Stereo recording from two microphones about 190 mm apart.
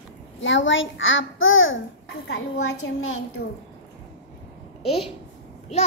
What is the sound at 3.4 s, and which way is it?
Speech, 65° left (ahead or behind).